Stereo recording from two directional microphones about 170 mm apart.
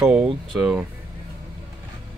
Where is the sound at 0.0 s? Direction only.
Centre (ahead or behind).